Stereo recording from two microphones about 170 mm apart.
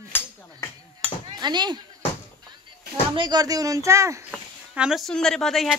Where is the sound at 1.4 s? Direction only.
25° right (ahead or behind).